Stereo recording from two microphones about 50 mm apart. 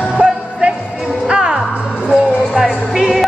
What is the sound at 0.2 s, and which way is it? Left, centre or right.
Music, right.